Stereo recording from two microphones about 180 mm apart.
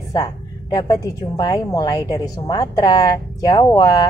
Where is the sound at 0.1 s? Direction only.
20° left (ahead or behind).